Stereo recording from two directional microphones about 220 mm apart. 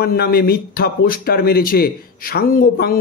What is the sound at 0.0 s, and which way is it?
A man's voice, 45° left (ahead or behind).